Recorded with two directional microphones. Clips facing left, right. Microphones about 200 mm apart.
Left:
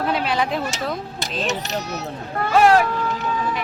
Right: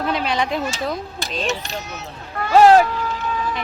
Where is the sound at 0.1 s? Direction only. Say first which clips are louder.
Right 2 dB; 5° left (ahead or behind).